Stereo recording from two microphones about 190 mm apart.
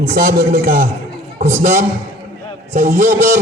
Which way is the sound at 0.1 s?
50° right (ahead or behind).